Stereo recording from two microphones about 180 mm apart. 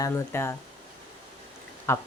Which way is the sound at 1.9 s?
15° left (ahead or behind).